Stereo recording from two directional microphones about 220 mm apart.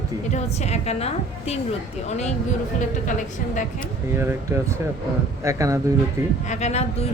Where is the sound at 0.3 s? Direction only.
30° left (ahead or behind).